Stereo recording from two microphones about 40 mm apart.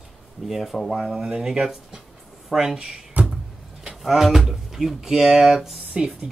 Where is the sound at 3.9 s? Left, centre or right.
Centre.